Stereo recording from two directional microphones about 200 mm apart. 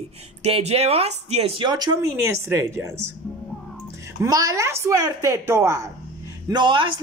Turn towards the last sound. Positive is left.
turn(degrees=-25)  # may be behind; listen again after turning